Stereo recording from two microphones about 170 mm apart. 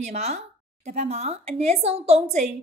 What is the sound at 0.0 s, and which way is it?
A woman's voice, 40° right (ahead or behind).